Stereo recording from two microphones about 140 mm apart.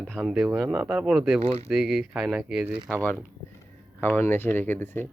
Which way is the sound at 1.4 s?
45° right (ahead or behind).